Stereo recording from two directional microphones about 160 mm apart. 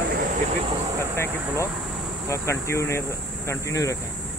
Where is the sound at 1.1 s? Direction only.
15° left (ahead or behind).